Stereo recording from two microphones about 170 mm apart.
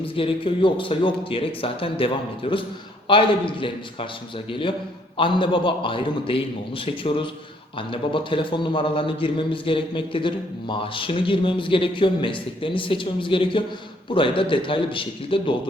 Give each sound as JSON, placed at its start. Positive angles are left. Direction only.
{"t": 0.2, "sound": "a man's voice", "side_deg": 30}